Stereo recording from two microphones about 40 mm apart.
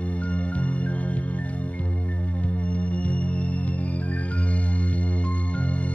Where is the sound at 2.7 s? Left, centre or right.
Left.